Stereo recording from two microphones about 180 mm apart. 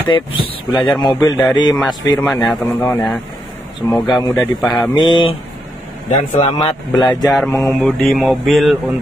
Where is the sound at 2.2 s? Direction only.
Centre (ahead or behind).